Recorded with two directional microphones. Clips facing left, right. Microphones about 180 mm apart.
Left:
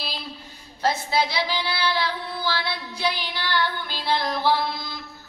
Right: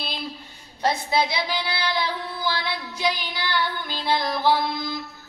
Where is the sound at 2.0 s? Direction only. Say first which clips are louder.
Even; 15° right (ahead or behind).